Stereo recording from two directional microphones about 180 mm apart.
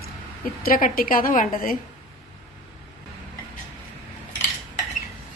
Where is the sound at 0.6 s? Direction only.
50° left (ahead or behind).